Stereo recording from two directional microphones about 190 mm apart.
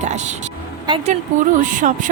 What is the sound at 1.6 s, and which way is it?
Speech, 40° right (ahead or behind).